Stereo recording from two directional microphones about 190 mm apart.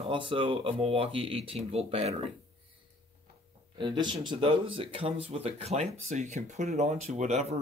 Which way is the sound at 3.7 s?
25° right (ahead or behind).